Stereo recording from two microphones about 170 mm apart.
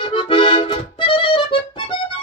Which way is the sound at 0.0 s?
30° left (ahead or behind).